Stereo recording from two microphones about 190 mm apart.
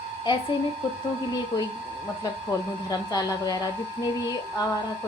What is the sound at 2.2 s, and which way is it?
Speech, 20° left (ahead or behind).